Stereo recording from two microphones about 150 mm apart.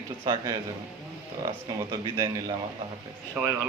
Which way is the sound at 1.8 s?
25° right (ahead or behind).